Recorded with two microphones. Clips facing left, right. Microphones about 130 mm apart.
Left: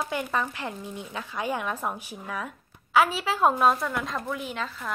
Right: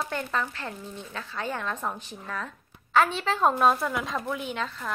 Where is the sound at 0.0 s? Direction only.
10° left (ahead or behind).